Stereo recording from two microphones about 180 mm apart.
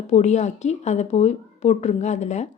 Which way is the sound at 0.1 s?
40° left (ahead or behind).